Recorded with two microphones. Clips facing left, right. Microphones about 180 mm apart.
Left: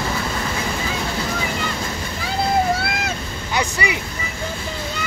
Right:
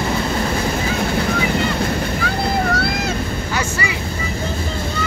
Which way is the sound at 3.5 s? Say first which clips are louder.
Left 3 dB; 15° left (ahead or behind).